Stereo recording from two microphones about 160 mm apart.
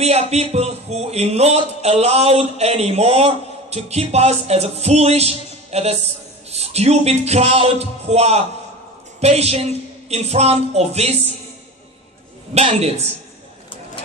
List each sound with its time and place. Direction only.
0.0 s speech: 40° right (ahead or behind)
12.5 s speech: 40° right (ahead or behind)